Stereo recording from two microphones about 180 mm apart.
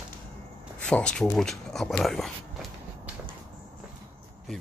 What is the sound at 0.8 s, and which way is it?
Speech, 5° left (ahead or behind).